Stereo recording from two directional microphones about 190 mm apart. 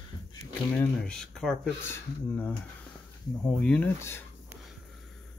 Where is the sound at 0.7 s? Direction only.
5° left (ahead or behind).